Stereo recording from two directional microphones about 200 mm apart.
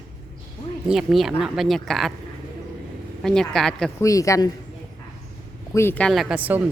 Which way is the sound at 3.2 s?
Centre (ahead or behind).